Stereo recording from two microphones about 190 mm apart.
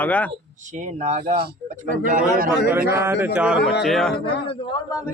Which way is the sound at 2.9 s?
15° right (ahead or behind).